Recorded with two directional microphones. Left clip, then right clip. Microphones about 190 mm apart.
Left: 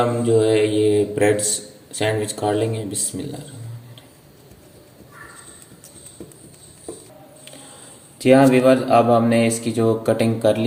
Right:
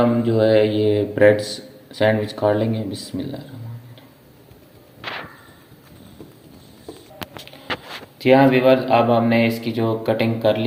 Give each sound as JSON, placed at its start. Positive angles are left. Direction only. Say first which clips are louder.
{"t": 0.3, "sound": "speech", "louder": "even", "side_deg": -20}
{"t": 8.2, "sound": "speech", "louder": "even", "side_deg": 40}